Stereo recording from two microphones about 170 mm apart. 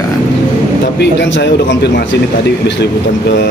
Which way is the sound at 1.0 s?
85° left.